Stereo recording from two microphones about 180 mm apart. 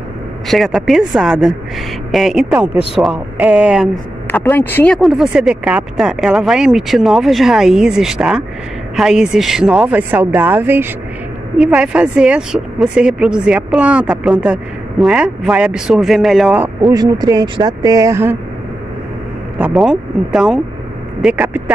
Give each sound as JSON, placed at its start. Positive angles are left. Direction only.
{"t": 0.5, "sound": "a woman's voice", "side_deg": 0}
{"t": 4.3, "sound": "a woman's voice", "side_deg": 10}
{"t": 16.9, "sound": "speech", "side_deg": -20}
{"t": 19.6, "sound": "a woman's voice", "side_deg": 0}